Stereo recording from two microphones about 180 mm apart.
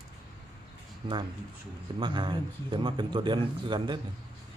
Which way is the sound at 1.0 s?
30° right (ahead or behind).